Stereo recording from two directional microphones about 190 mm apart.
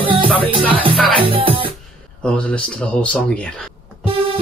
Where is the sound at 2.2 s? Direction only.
5° left (ahead or behind).